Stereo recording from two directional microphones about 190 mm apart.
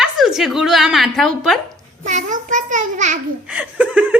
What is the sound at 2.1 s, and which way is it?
A child's voice, 40° right (ahead or behind).